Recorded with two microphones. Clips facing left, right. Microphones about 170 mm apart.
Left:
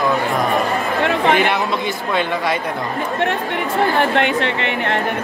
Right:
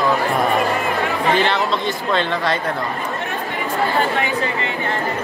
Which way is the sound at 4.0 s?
75° left (ahead or behind).